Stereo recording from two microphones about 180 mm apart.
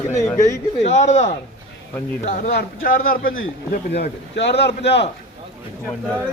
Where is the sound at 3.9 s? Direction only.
75° left (ahead or behind).